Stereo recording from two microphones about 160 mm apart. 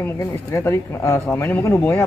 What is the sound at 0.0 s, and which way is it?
Speech, 20° left (ahead or behind).